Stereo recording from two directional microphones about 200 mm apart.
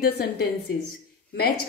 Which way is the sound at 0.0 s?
55° left (ahead or behind).